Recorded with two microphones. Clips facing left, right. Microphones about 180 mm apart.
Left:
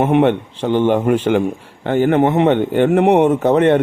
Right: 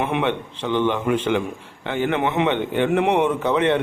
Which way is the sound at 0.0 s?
40° left (ahead or behind).